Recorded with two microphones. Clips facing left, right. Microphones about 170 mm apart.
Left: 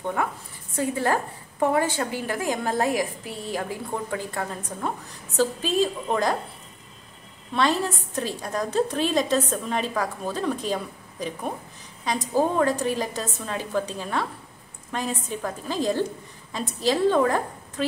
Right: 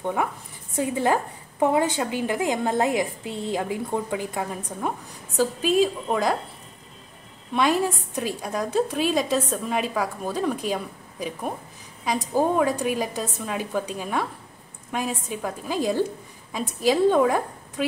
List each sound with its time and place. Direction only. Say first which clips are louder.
0.0 s a woman's voice: right 1 dB; 15° right (ahead or behind)
7.5 s a woman's voice: right 2 dB; 10° right (ahead or behind)